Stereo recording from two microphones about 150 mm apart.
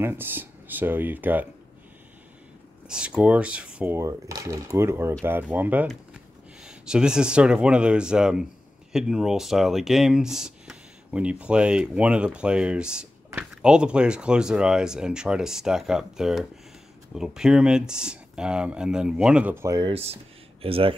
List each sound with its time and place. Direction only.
0.0 s speech: 15° right (ahead or behind)
2.9 s speech: 5° right (ahead or behind)
19.8 s speech: 40° right (ahead or behind)